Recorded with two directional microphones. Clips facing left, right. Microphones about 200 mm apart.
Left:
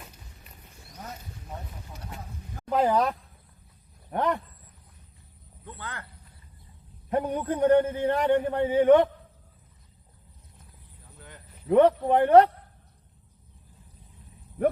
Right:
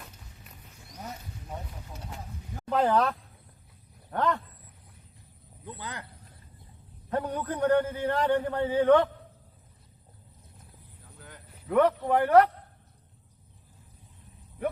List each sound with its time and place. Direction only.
2.6 s speech: 10° left (ahead or behind)
5.6 s speech: 15° right (ahead or behind)
7.1 s a man's voice: 20° left (ahead or behind)
11.2 s a sound: centre (ahead or behind)
11.7 s a man's voice: 25° left (ahead or behind)